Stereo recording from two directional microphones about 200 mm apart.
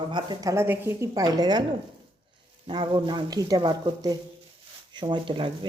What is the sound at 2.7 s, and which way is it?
Speech, 25° right (ahead or behind).